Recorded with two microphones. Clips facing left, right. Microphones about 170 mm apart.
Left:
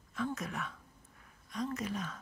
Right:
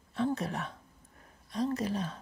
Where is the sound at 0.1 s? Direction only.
30° right (ahead or behind).